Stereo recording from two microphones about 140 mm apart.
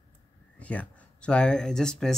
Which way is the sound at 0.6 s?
10° left (ahead or behind).